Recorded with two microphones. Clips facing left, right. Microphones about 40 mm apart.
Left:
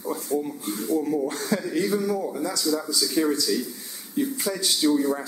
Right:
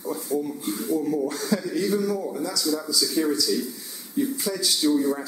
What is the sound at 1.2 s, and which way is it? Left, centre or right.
Speech, left.